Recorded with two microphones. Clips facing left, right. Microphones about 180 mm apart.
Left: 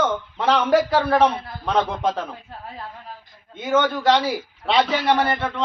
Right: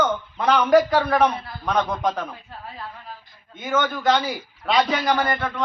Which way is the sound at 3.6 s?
30° left (ahead or behind).